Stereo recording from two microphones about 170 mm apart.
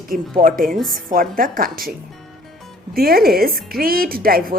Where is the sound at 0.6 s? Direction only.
Centre (ahead or behind).